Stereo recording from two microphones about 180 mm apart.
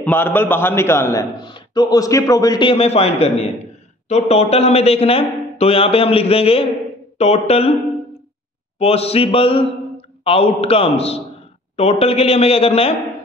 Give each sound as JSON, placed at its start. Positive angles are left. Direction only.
{"t": 0.0, "sound": "a man's voice", "side_deg": 10}
{"t": 8.7, "sound": "a man's voice", "side_deg": 35}